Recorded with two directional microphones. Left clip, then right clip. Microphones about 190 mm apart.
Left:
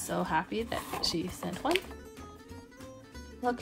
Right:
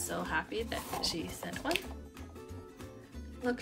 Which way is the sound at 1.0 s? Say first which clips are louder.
Left 3 dB; 25° left (ahead or behind).